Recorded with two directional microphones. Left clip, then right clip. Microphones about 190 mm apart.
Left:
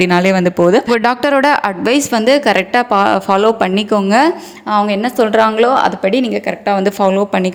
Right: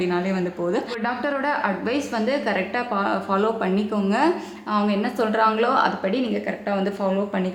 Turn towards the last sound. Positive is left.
turn(degrees=45)  # may be behind; listen again after turning